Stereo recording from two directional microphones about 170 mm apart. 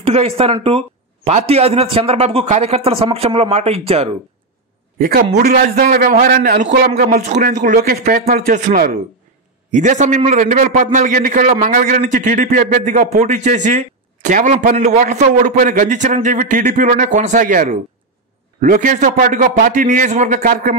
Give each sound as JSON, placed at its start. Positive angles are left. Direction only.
{"t": 0.0, "sound": "speech", "side_deg": -35}
{"t": 4.9, "sound": "a man's voice", "side_deg": -60}
{"t": 6.3, "sound": "a man's voice", "side_deg": -65}
{"t": 7.2, "sound": "a man's voice", "side_deg": -45}